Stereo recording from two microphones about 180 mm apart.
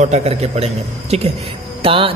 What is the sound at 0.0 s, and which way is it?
Speech, 35° right (ahead or behind).